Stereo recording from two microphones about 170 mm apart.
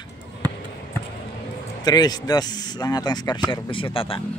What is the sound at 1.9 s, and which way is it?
Speech, 25° left (ahead or behind).